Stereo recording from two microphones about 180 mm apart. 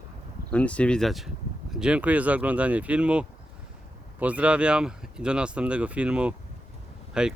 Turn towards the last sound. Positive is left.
turn(degrees=-5)  # may be behind; listen again after turning